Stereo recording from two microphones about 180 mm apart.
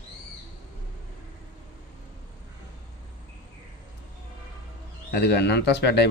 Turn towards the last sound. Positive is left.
turn(degrees=70)  # may be behind; listen again after turning